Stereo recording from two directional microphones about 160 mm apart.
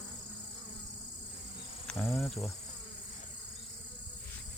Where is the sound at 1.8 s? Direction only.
5° left (ahead or behind).